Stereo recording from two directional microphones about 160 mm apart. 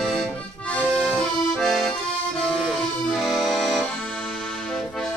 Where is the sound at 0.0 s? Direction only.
Centre (ahead or behind).